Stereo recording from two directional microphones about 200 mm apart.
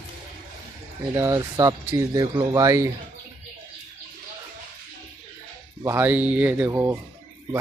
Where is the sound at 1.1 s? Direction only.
15° right (ahead or behind).